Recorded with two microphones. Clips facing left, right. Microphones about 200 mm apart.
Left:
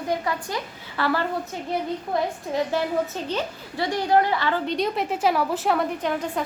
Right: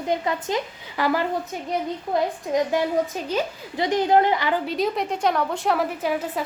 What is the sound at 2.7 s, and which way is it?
A woman's voice, 10° right (ahead or behind).